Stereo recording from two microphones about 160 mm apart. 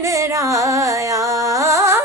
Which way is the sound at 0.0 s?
20° right (ahead or behind).